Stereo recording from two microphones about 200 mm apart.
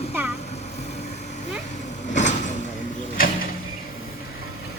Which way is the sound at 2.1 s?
35° left (ahead or behind).